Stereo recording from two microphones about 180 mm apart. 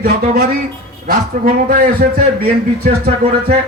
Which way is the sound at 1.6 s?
55° right (ahead or behind).